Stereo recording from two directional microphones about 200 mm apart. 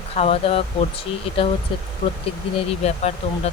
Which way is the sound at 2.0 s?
30° left (ahead or behind).